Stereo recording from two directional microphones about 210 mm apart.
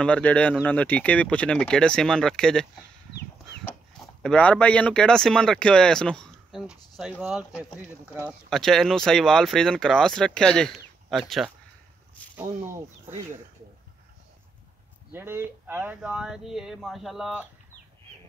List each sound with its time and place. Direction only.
0.0 s speech: 5° left (ahead or behind)
3.2 s chicken: 50° left (ahead or behind)
4.2 s speech: 5° left (ahead or behind)
8.5 s speech: centre (ahead or behind)
12.4 s speech: 10° right (ahead or behind)
15.1 s speech: 10° right (ahead or behind)